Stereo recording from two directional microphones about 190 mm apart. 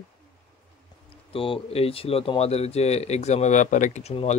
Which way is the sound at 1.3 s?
30° left (ahead or behind).